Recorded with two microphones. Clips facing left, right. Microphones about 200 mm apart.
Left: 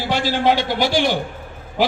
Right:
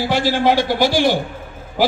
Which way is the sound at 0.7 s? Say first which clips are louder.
Right 2 dB; 15° left (ahead or behind).